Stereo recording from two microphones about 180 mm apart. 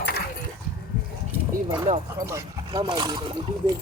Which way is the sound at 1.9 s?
45° right (ahead or behind).